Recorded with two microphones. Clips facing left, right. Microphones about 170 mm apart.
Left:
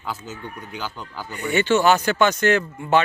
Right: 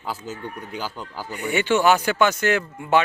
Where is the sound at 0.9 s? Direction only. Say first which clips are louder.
Right 1 dB; 10° right (ahead or behind).